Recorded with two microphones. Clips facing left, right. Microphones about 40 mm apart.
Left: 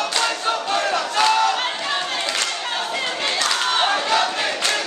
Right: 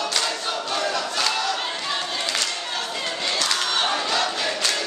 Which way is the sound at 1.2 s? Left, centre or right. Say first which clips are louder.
Left 9 dB; left.